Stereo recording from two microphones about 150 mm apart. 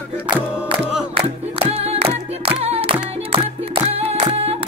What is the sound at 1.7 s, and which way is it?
Music, 40° right (ahead or behind).